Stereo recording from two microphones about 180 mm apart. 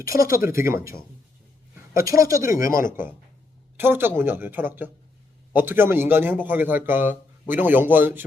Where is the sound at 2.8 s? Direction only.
10° right (ahead or behind).